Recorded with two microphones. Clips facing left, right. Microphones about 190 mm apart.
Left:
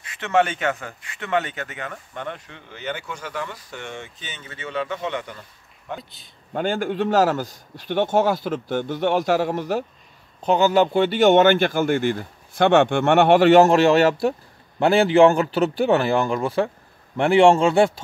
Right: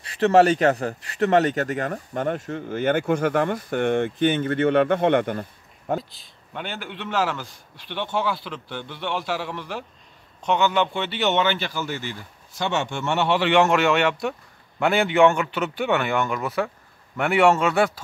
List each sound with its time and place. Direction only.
0.0 s speech: 35° right (ahead or behind); by 5.9 s 55° right (ahead or behind)
5.9 s speech: centre (ahead or behind)
6.5 s a man's voice: 45° left (ahead or behind); by 18.0 s 30° left (ahead or behind)